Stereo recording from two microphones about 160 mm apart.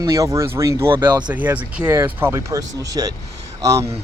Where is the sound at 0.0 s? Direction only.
20° right (ahead or behind).